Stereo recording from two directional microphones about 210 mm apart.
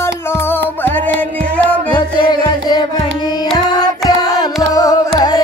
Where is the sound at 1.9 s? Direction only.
20° left (ahead or behind).